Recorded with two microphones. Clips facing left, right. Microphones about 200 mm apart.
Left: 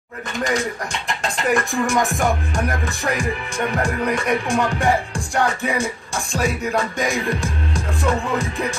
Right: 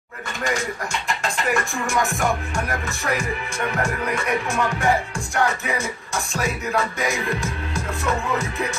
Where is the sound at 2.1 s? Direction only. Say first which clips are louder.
Left 2 dB; 35° left (ahead or behind).